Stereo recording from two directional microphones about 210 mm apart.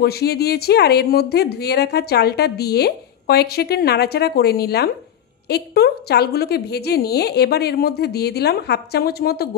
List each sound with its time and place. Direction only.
0.0 s speech: 50° left (ahead or behind)